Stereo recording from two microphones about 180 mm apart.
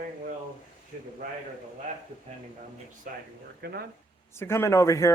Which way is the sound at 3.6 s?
65° right (ahead or behind).